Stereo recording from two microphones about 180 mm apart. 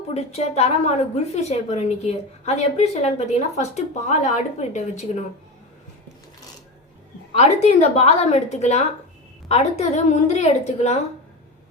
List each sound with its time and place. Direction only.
0.1 s a woman's voice: 35° left (ahead or behind)
7.3 s a woman's voice: 40° left (ahead or behind)